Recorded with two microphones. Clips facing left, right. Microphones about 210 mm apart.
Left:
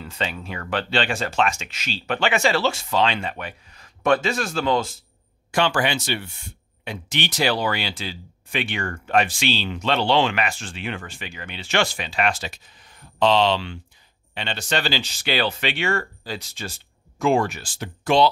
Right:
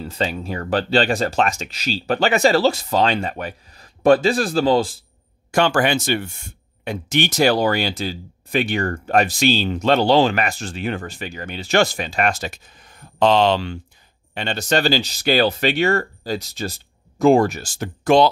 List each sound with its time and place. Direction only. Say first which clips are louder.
0.0 s speech: right 5 dB; 35° right (ahead or behind)
5.5 s speech: right 4 dB; 45° right (ahead or behind)